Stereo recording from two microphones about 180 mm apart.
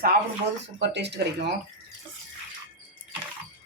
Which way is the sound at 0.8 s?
75° right (ahead or behind).